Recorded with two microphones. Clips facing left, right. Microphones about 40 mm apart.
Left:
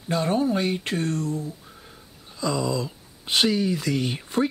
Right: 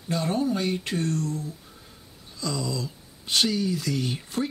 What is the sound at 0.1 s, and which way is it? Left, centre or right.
Speech, centre.